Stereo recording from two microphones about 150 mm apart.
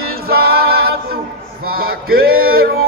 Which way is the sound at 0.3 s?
90° right.